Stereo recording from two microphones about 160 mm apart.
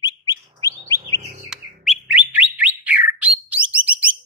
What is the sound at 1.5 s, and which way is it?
Bird, 5° right (ahead or behind).